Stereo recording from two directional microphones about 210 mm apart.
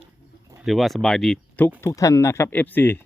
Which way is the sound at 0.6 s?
Centre (ahead or behind).